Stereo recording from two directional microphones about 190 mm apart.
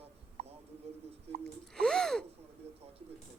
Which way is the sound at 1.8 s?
5° left (ahead or behind).